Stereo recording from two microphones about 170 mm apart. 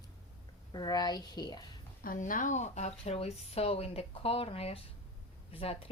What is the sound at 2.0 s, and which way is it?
Speech, 50° left (ahead or behind).